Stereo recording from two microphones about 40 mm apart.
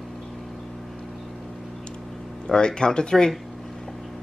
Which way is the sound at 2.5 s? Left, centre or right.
Centre.